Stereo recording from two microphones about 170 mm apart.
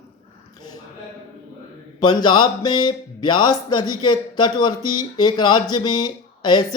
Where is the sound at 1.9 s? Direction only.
25° left (ahead or behind).